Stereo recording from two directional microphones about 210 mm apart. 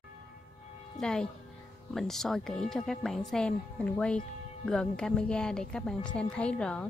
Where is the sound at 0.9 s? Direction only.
5° left (ahead or behind).